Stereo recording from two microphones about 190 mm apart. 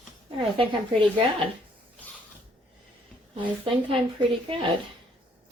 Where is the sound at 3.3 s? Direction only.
30° right (ahead or behind).